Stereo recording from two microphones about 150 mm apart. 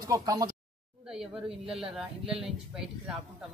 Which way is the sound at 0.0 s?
25° right (ahead or behind).